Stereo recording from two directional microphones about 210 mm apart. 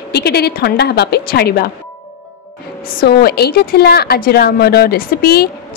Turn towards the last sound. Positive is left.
turn(degrees=50)  # may be behind; listen again after turning